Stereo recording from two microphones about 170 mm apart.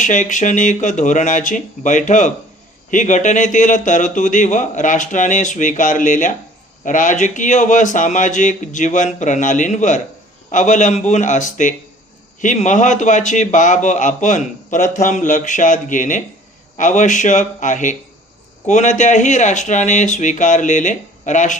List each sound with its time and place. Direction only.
0.0 s speech: 45° left (ahead or behind)